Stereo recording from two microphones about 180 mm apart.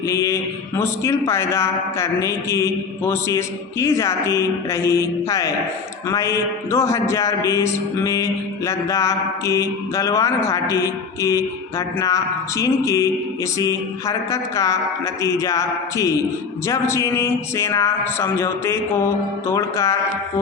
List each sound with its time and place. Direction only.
0.1 s a man's voice: 15° left (ahead or behind)